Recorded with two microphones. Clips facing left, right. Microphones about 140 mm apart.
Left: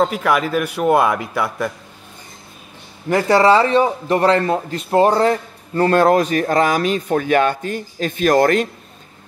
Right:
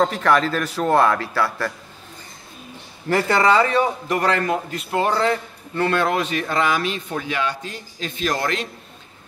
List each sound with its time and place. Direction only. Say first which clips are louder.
0.0 s a man's voice: left 1 dB; 10° left (ahead or behind)
3.1 s a man's voice: left 4 dB; 25° left (ahead or behind); by 8.6 s 50° left (ahead or behind)